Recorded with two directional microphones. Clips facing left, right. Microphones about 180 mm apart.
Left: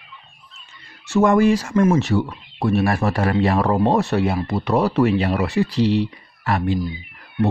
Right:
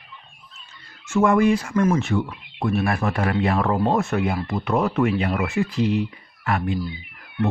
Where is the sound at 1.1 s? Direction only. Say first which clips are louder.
Left 2 dB; 40° left (ahead or behind).